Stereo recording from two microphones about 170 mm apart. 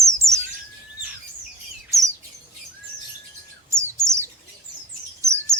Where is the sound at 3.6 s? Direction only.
15° right (ahead or behind).